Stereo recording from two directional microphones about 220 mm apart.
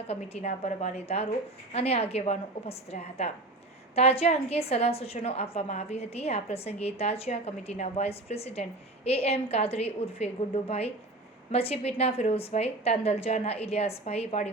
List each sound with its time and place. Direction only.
0.1 s a woman's voice: 30° left (ahead or behind)